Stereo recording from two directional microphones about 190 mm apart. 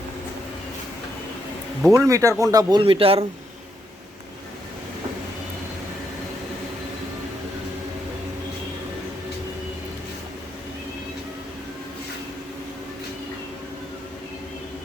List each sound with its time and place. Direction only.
1.9 s speech: 15° right (ahead or behind)